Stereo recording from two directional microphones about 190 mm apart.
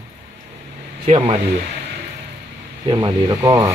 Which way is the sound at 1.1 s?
30° right (ahead or behind).